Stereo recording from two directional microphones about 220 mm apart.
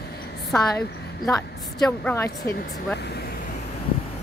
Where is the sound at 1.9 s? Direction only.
15° left (ahead or behind).